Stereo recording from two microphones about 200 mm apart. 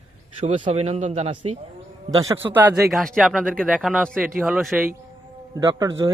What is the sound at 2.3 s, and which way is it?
A man's voice, 10° right (ahead or behind).